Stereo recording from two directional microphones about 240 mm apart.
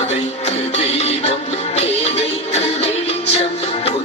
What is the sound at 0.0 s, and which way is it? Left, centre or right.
Music, left.